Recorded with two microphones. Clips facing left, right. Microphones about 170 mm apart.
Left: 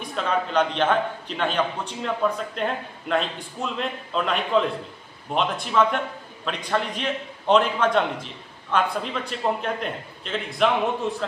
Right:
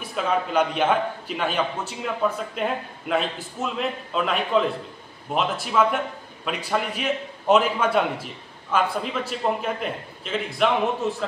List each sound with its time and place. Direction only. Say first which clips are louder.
0.0 s a man's voice: right 1 dB; 5° right (ahead or behind)